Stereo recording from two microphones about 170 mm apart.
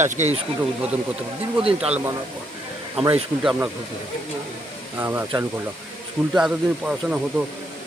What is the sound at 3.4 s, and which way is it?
Speech, 5° right (ahead or behind).